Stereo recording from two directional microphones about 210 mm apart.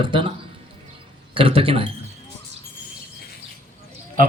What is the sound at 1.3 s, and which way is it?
Speech, 25° right (ahead or behind).